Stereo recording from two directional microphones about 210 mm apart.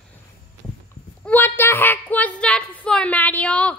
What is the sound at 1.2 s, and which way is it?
A woman's voice, 10° left (ahead or behind).